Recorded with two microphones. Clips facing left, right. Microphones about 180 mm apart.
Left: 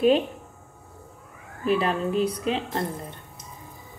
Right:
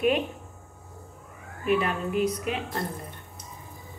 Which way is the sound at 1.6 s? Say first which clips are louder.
Left 2 dB; 30° left (ahead or behind).